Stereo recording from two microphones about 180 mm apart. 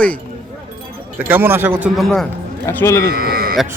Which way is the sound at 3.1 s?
55° right (ahead or behind).